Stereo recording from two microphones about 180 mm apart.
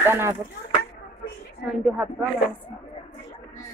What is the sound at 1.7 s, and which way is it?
Speech, 5° right (ahead or behind).